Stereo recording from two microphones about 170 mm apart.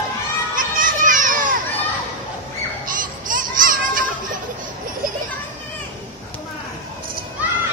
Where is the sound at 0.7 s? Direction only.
50° right (ahead or behind).